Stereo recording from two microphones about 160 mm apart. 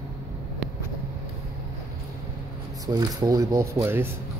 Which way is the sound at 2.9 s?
25° right (ahead or behind).